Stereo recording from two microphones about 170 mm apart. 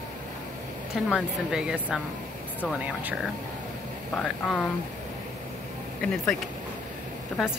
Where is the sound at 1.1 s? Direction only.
5° right (ahead or behind).